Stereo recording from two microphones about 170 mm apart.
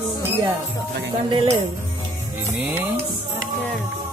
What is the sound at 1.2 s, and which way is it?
Music, 30° right (ahead or behind).